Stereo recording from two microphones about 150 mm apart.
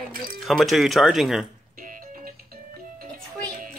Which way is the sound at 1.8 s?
65° right (ahead or behind).